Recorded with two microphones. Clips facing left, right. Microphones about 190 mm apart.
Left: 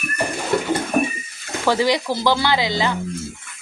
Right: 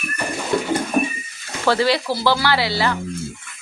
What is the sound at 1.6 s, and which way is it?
A woman's voice, 15° left (ahead or behind).